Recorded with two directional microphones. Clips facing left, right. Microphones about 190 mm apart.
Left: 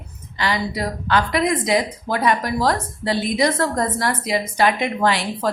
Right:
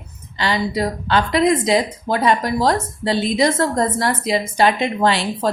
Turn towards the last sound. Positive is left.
turn(degrees=-25)  # may be behind; listen again after turning